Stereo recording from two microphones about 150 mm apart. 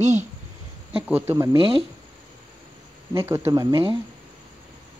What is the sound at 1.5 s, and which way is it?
Speech, 35° right (ahead or behind).